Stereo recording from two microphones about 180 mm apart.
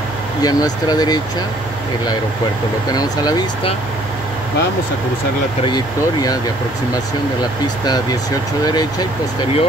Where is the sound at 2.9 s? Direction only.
20° left (ahead or behind).